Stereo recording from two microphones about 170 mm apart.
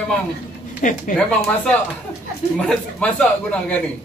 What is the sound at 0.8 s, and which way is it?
Speech, 45° left (ahead or behind).